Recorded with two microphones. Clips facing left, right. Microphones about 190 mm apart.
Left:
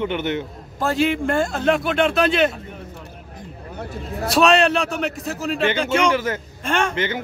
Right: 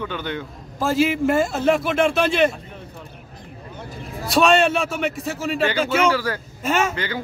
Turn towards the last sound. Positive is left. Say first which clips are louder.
# left 3 dB
turn(degrees=20)  # may be behind; listen again after turning